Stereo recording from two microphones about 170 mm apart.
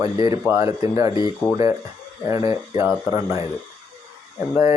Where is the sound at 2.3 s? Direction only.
20° right (ahead or behind).